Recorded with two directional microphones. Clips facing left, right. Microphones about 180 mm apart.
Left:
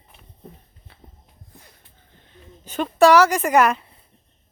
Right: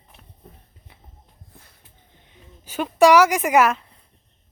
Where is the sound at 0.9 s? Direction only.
15° right (ahead or behind).